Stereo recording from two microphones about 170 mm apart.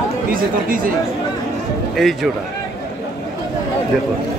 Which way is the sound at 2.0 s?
Centre (ahead or behind).